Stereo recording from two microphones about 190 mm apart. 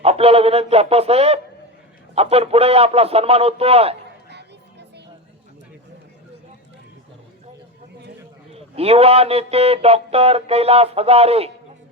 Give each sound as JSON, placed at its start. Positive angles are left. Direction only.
{"t": 0.0, "sound": "speech", "side_deg": -30}
{"t": 4.3, "sound": "a sound", "side_deg": -60}
{"t": 8.5, "sound": "speech", "side_deg": -30}